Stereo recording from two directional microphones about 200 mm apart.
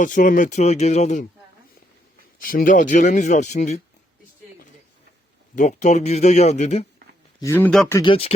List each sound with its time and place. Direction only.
0.0 s speech: 40° left (ahead or behind)
2.5 s speech: 45° left (ahead or behind)
5.5 s speech: 35° left (ahead or behind)
7.4 s speech: 10° left (ahead or behind)
7.9 s speech: 25° left (ahead or behind)